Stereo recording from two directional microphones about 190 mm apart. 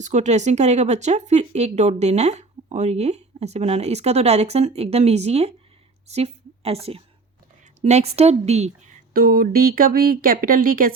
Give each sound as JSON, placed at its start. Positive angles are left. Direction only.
{"t": 0.0, "sound": "a woman's voice", "side_deg": -40}